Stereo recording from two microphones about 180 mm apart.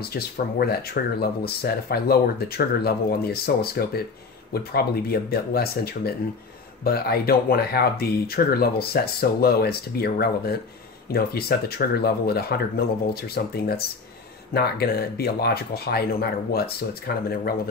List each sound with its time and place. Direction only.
0.1 s speech: 60° left (ahead or behind)